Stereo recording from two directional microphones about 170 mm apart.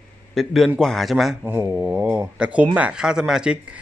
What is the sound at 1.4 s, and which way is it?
Speech, 10° right (ahead or behind).